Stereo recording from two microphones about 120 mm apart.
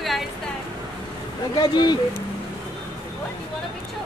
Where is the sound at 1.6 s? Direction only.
35° left (ahead or behind).